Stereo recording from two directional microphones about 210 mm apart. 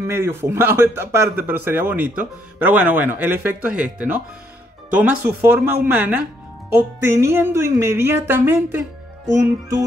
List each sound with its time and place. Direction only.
0.0 s a man's voice: 10° right (ahead or behind)